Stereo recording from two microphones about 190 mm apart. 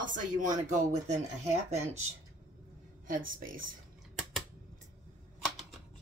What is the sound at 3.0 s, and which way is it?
Speech, 45° right (ahead or behind).